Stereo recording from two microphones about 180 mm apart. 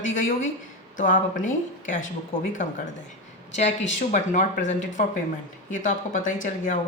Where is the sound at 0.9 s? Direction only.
45° left (ahead or behind).